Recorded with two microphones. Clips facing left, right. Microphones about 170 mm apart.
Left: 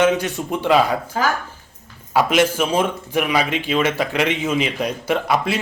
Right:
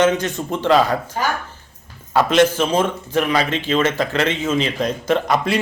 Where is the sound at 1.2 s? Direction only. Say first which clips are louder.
Left 3 dB; 90° left.